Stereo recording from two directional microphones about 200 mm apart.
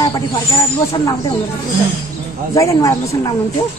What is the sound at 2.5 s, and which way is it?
Speech, 15° left (ahead or behind).